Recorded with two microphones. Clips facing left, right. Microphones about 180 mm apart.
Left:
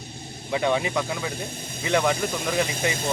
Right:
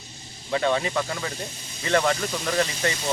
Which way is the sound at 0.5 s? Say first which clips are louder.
Even; 15° left (ahead or behind).